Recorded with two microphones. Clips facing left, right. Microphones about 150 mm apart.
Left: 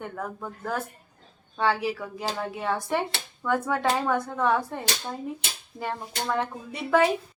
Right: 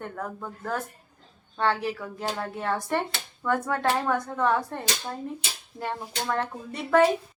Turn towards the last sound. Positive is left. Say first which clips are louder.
# even
turn(degrees=5)  # may be behind; listen again after turning